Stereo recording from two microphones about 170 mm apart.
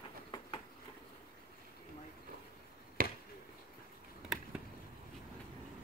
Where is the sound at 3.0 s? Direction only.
55° right (ahead or behind).